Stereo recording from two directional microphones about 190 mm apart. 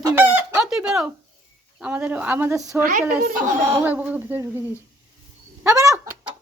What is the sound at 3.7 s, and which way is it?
Speech, 15° right (ahead or behind).